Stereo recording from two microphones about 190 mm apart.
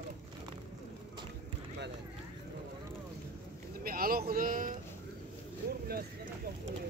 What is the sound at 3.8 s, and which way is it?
Vehicle, 50° right (ahead or behind).